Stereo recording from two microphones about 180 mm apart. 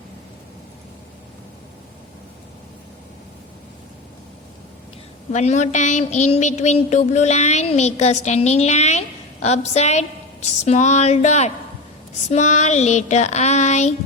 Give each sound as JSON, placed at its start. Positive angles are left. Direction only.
{"t": 5.3, "sound": "a woman's voice", "side_deg": 40}